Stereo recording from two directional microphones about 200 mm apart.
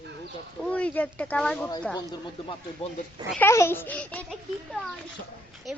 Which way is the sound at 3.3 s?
15° left (ahead or behind).